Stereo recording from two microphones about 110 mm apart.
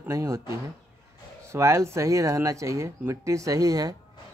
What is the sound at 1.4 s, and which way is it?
Speech, 25° right (ahead or behind).